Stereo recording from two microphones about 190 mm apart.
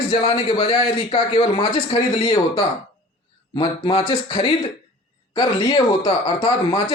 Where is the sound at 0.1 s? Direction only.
30° left (ahead or behind).